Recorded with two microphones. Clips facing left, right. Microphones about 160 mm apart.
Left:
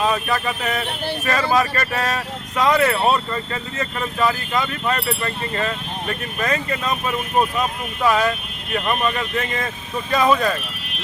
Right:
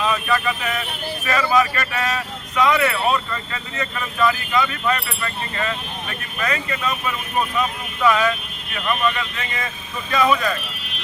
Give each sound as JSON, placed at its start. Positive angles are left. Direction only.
{"t": 0.0, "sound": "speech", "side_deg": 40}
{"t": 8.7, "sound": "speech", "side_deg": 40}